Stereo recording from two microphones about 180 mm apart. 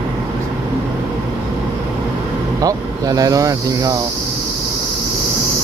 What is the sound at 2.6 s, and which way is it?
Speech, 20° right (ahead or behind).